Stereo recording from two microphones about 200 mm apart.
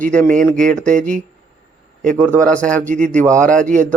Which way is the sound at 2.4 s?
5° left (ahead or behind).